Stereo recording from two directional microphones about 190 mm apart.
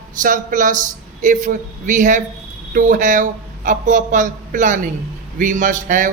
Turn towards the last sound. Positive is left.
turn(degrees=-45)  # may be behind; listen again after turning